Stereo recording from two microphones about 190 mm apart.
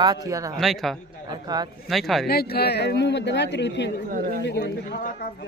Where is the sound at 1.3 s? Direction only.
20° right (ahead or behind).